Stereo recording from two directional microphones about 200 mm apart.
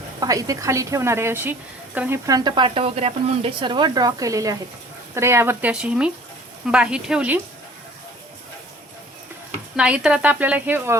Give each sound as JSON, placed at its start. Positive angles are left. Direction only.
{"t": 0.2, "sound": "a woman's voice", "side_deg": -15}
{"t": 9.7, "sound": "a woman's voice", "side_deg": -5}